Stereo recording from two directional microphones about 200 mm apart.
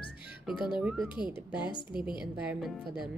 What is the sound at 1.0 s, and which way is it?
A woman's voice, 25° left (ahead or behind).